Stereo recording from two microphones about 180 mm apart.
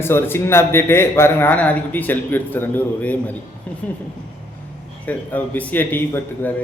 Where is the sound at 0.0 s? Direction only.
15° left (ahead or behind).